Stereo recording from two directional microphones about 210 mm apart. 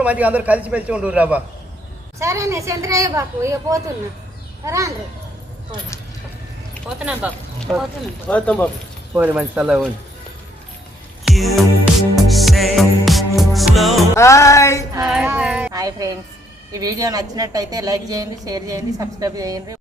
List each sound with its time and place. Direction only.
0.0 s a woman's voice: 5° right (ahead or behind)
7.0 s a woman's voice: 5° right (ahead or behind)
9.1 s a woman's voice: 5° right (ahead or behind)
11.3 s music: centre (ahead or behind)
14.2 s music: 15° left (ahead or behind)
15.0 s a woman's voice: 5° right (ahead or behind)
15.7 s a child's voice: 15° right (ahead or behind)